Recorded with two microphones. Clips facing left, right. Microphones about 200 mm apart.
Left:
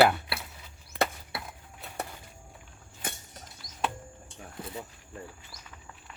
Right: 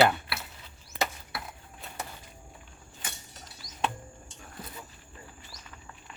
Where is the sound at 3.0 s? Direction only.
55° left (ahead or behind).